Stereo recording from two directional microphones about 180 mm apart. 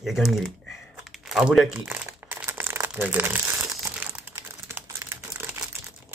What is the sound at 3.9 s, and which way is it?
Computer keyboard, 10° right (ahead or behind).